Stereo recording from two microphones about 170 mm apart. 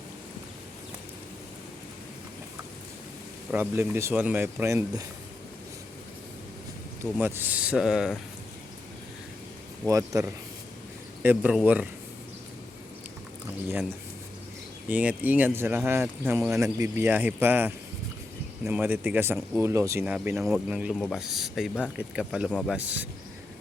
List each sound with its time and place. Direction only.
3.5 s speech: 10° right (ahead or behind)
7.0 s speech: 15° right (ahead or behind)
9.8 s speech: 20° right (ahead or behind)
11.2 s speech: 10° right (ahead or behind)
14.8 s speech: 10° right (ahead or behind)
20.1 s speech: 5° right (ahead or behind)